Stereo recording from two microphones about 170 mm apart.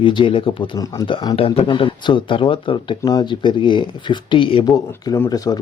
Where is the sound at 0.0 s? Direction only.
30° left (ahead or behind).